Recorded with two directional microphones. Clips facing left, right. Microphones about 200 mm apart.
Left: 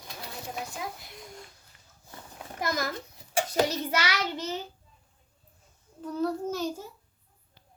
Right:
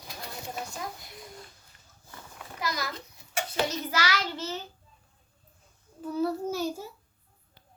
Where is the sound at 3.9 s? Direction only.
20° left (ahead or behind).